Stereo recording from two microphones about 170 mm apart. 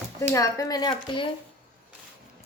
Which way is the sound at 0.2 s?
20° left (ahead or behind).